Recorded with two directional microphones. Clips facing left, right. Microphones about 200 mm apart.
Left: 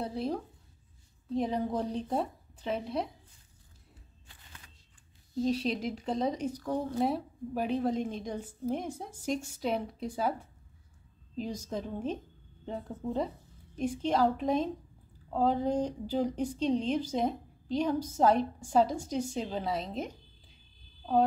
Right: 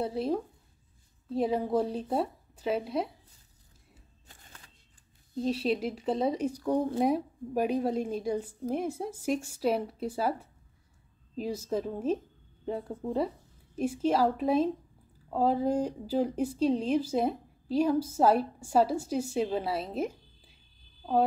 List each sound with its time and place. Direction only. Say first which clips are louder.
0.0 s a woman's voice: right 4 dB; 5° right (ahead or behind)
4.3 s shuffling cards: right 3 dB; 45° right (ahead or behind)
5.5 s speech: right 4 dB; 5° right (ahead or behind)
11.3 s a woman's voice: right 4 dB; 5° right (ahead or behind)